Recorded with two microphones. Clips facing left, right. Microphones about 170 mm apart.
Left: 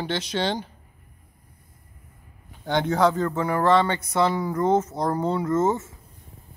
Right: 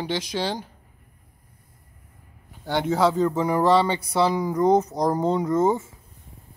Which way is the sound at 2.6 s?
5° right (ahead or behind).